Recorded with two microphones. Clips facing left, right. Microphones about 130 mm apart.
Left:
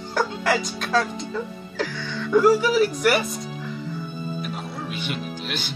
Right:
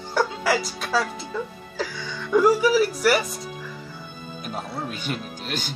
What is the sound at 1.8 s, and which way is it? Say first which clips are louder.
Speech: left 2 dB; 10° right (ahead or behind).